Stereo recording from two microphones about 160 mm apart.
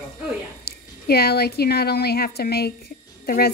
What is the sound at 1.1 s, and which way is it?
A woman's voice, 85° left.